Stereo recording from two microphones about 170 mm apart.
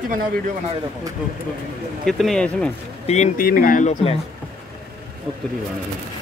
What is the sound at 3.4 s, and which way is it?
Speech, 60° left (ahead or behind).